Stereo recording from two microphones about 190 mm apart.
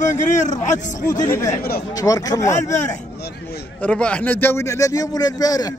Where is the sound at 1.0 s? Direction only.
20° left (ahead or behind).